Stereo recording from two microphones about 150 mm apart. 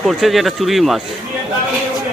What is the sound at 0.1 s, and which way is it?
Speech, centre (ahead or behind).